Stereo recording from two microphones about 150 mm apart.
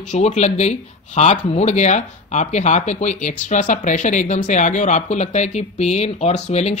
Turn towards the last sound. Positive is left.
turn(degrees=45)  # may be behind; listen again after turning